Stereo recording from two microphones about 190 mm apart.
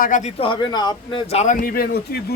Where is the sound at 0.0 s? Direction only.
40° left (ahead or behind).